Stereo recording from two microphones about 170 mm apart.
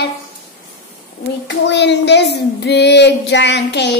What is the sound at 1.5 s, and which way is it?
Child singing, 90° left.